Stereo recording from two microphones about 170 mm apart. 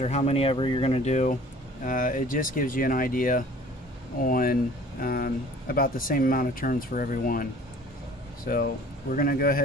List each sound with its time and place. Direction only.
0.0 s speech: 40° left (ahead or behind); by 7.4 s 55° left (ahead or behind)
9.1 s speech: 60° left (ahead or behind)